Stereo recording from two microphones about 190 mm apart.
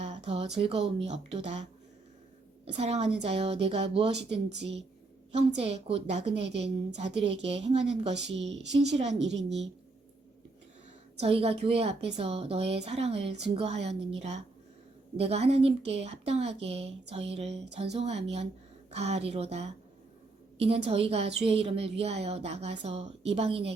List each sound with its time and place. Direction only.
0.0 s a sound: 35° right (ahead or behind)
0.6 s a woman's voice: 30° right (ahead or behind)
2.6 s a woman's voice: 35° right (ahead or behind)
5.3 s a woman's voice: 35° right (ahead or behind)
8.4 s speech: 70° right (ahead or behind)
9.0 s a woman's voice: 35° right (ahead or behind)
9.2 s speech: 70° right (ahead or behind)
11.2 s a woman's voice: 30° right (ahead or behind)